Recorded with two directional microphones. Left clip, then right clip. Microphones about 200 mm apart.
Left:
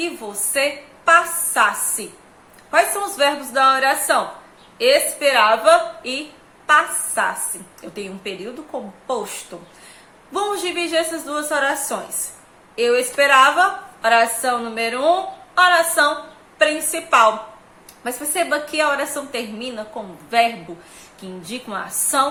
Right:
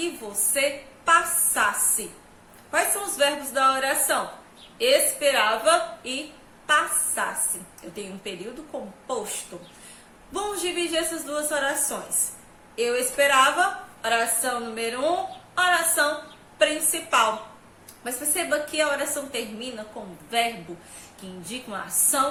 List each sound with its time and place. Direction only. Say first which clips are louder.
0.5 s a woman's voice: left 5 dB; 20° left (ahead or behind)
9.5 s a woman's voice: left 4 dB; 15° left (ahead or behind)
21.4 s a woman's voice: left 5 dB; 20° left (ahead or behind)